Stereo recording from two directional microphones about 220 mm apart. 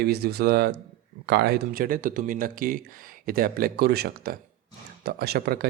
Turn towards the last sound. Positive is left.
turn(degrees=-45)  # may be behind; listen again after turning